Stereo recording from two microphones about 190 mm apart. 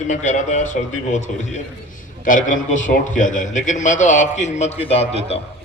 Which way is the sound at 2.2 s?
45° left (ahead or behind).